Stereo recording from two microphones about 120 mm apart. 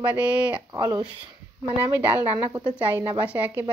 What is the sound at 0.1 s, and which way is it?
Speech, 10° right (ahead or behind).